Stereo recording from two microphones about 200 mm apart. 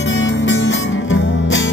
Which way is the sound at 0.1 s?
70° left (ahead or behind).